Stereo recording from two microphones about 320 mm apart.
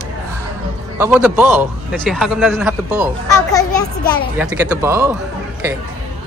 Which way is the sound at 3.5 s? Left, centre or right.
Centre.